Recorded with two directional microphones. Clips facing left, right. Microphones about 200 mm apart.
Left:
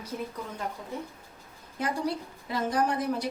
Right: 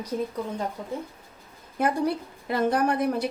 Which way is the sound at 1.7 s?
55° right (ahead or behind).